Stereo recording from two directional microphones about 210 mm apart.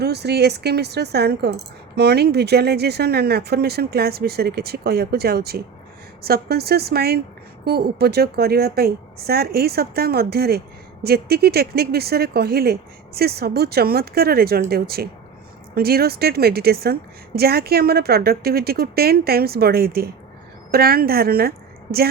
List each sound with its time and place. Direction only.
0.0 s a woman's voice: 50° right (ahead or behind)